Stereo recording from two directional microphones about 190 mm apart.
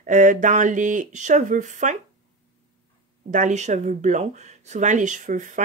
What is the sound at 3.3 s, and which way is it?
Speech, 40° right (ahead or behind).